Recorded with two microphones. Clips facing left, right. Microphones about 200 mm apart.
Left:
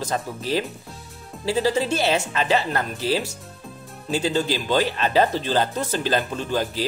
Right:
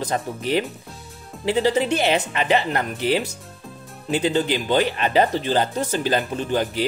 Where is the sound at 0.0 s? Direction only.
15° right (ahead or behind).